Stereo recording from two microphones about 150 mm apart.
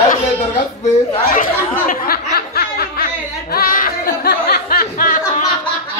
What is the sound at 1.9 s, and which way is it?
Snicker, 85° left.